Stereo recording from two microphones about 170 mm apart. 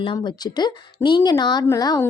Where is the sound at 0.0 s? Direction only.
30° left (ahead or behind).